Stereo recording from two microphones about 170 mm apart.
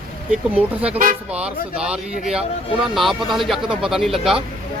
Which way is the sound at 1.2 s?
5° right (ahead or behind).